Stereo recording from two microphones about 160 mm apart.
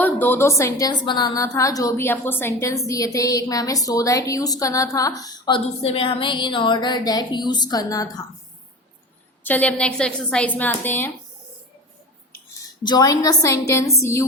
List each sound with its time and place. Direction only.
0.0 s a woman's voice: 10° left (ahead or behind)
9.4 s a woman's voice: 10° left (ahead or behind)
12.8 s a woman's voice: 25° left (ahead or behind)